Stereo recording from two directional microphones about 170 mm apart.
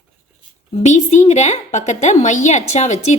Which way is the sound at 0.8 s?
45° left (ahead or behind).